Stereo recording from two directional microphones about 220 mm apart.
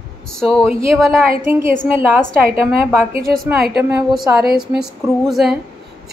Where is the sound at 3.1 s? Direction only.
40° right (ahead or behind).